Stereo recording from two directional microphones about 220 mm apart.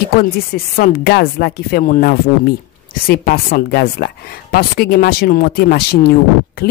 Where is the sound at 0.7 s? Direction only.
45° left (ahead or behind).